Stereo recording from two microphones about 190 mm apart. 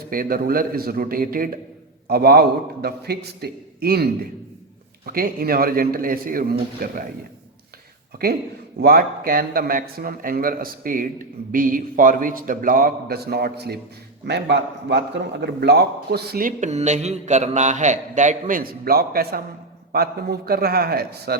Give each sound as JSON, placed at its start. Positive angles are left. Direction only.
{"t": 0.1, "sound": "a man's voice", "side_deg": -50}
{"t": 8.8, "sound": "a man's voice", "side_deg": -55}